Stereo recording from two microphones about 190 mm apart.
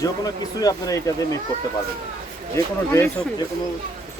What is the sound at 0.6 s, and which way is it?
Speech, 20° left (ahead or behind).